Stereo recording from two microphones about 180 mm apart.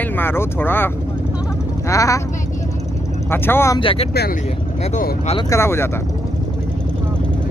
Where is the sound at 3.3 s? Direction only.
15° left (ahead or behind).